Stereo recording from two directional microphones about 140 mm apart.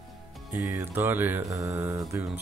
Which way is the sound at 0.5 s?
20° right (ahead or behind).